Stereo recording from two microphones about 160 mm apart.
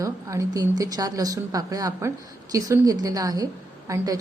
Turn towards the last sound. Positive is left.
turn(degrees=-20)  # may be behind; listen again after turning